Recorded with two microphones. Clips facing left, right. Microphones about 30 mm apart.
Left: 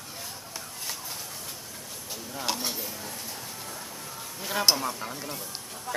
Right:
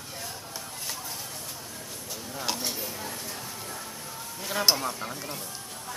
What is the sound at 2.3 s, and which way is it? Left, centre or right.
Speech, centre.